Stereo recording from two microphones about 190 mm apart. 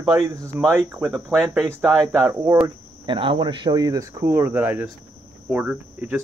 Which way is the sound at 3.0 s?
25° right (ahead or behind).